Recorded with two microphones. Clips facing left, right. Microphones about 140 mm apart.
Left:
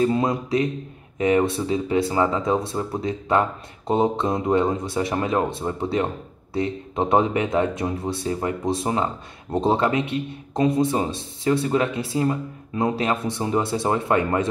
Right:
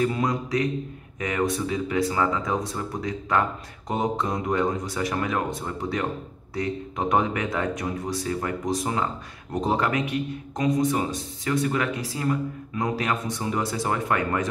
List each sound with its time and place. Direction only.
0.0 s speech: 25° left (ahead or behind)